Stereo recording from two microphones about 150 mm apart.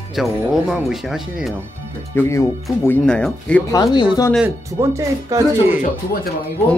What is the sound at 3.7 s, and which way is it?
Speech, 25° left (ahead or behind).